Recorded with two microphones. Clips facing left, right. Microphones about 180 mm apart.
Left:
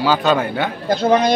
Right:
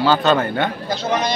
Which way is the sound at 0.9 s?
55° left (ahead or behind).